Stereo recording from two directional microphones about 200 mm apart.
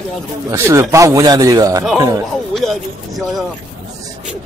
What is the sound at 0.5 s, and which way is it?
Speech, 15° right (ahead or behind).